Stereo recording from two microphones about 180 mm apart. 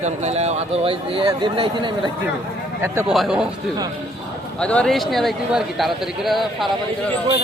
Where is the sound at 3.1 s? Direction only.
Centre (ahead or behind).